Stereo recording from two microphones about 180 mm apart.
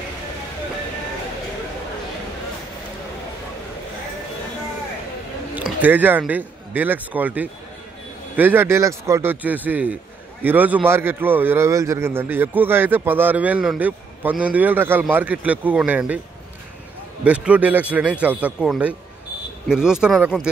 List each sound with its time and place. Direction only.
5.5 s a man's voice: 10° right (ahead or behind)
17.2 s a man's voice: 5° right (ahead or behind)